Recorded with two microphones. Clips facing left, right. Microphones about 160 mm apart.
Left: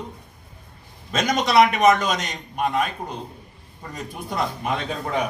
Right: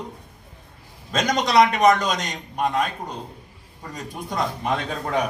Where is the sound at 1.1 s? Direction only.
5° left (ahead or behind).